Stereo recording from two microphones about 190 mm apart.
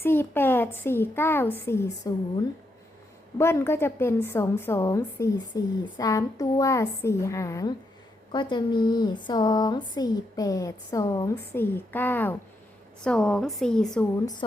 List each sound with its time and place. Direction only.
0.0 s a woman's voice: 10° left (ahead or behind)
3.3 s a woman's voice: 15° left (ahead or behind)